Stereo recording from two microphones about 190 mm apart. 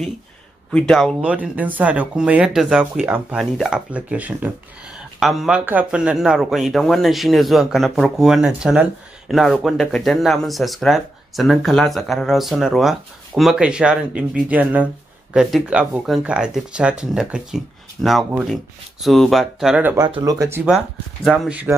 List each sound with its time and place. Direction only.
0.7 s speech: 5° left (ahead or behind)
1.2 s speech: 5° right (ahead or behind)
20.1 s speech: 20° right (ahead or behind)
20.7 s speech: centre (ahead or behind)